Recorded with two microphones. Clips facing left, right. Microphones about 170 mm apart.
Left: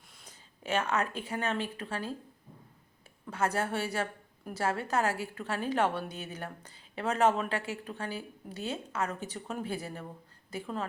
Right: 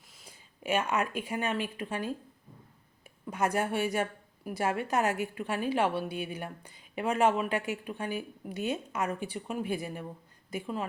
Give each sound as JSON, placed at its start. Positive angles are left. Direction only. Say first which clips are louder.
{"t": 0.1, "sound": "a sound", "louder": "right 2 dB", "side_deg": 0}
{"t": 0.6, "sound": "a woman's voice", "louder": "right 1 dB", "side_deg": -10}
{"t": 3.2, "sound": "a woman's voice", "louder": "right 2 dB", "side_deg": -15}